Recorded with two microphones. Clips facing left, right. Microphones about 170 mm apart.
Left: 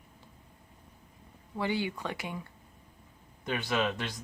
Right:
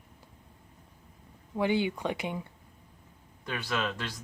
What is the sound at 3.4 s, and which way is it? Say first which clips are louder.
Speech: left 2 dB; 15° left (ahead or behind).